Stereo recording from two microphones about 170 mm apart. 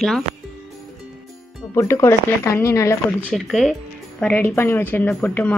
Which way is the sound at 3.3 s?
Centre (ahead or behind).